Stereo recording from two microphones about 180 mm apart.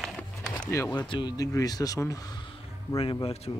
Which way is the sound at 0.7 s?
20° left (ahead or behind).